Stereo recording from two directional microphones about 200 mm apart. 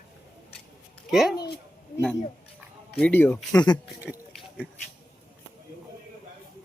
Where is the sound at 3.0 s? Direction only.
10° left (ahead or behind).